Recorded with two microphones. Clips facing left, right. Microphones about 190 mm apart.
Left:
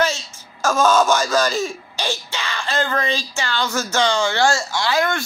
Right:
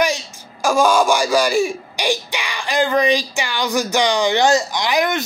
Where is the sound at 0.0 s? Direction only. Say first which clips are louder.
Right 2 dB; 15° right (ahead or behind).